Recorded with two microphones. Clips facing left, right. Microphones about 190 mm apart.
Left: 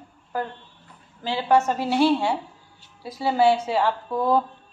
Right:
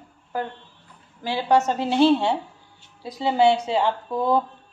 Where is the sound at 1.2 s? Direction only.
15° right (ahead or behind).